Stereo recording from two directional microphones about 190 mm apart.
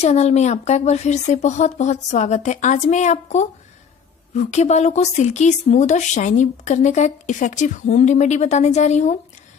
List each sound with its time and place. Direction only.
0.0 s a woman's voice: 35° left (ahead or behind)